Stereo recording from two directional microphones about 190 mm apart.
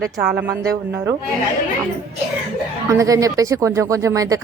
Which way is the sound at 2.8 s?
15° right (ahead or behind).